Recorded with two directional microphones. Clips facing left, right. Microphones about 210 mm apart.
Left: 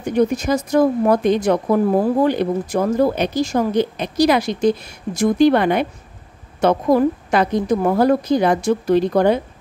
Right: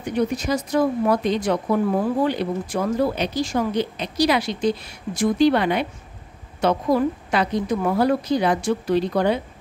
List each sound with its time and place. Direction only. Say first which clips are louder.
0.0 s speech: left 5 dB; 45° left (ahead or behind)